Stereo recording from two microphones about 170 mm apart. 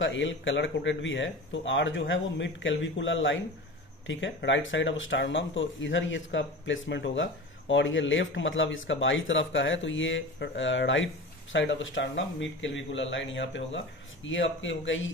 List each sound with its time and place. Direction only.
0.0 s speech: 90° left